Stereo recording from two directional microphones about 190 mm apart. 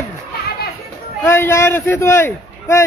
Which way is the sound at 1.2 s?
15° left (ahead or behind).